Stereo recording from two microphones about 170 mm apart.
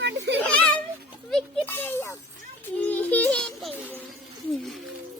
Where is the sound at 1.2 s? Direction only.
10° left (ahead or behind).